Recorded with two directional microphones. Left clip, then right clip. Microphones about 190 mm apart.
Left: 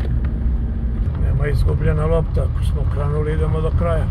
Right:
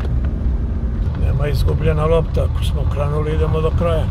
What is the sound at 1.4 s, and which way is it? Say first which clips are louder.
Vehicle: right 1 dB; 20° right (ahead or behind).